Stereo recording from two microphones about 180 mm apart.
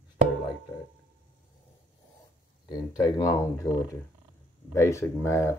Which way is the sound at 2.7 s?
15° left (ahead or behind).